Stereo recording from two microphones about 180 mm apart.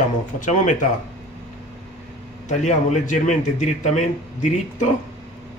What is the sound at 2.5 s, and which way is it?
Speech, 40° left (ahead or behind).